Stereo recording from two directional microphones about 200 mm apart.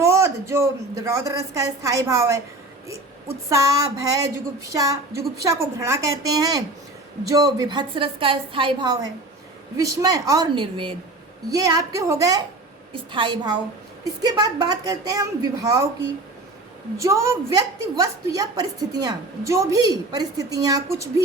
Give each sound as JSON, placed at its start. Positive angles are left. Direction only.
{"t": 0.0, "sound": "a woman's voice", "side_deg": -15}
{"t": 17.0, "sound": "a woman's voice", "side_deg": -15}